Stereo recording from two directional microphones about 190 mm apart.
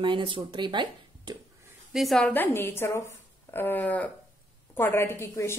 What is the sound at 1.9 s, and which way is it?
A woman's voice, centre (ahead or behind).